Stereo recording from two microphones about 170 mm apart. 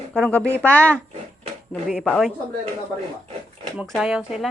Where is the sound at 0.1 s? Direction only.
5° left (ahead or behind).